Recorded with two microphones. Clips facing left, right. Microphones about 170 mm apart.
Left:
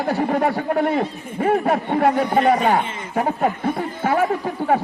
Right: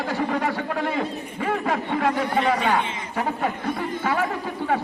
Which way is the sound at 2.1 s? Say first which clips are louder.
Left 5 dB; 35° left (ahead or behind).